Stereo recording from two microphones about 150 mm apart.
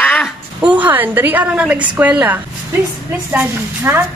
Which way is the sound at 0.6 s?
10° right (ahead or behind).